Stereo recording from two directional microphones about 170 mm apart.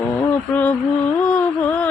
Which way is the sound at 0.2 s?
10° left (ahead or behind).